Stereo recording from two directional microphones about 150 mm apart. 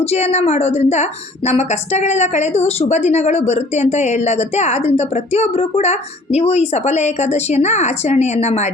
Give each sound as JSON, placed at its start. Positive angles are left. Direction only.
{"t": 0.0, "sound": "a woman's voice", "side_deg": 45}